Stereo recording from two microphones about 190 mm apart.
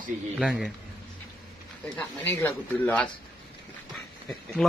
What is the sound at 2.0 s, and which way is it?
Speech, 10° left (ahead or behind).